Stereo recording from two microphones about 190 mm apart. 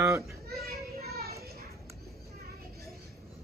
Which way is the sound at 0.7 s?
55° right (ahead or behind).